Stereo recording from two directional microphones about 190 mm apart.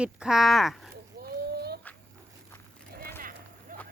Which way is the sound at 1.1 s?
55° right (ahead or behind).